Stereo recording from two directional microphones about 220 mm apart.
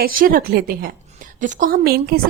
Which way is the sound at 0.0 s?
40° right (ahead or behind).